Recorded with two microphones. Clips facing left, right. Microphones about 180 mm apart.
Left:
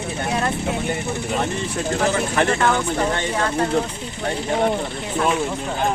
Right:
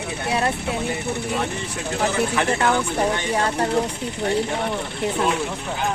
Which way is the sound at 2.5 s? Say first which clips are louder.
Left 1 dB; 35° right (ahead or behind).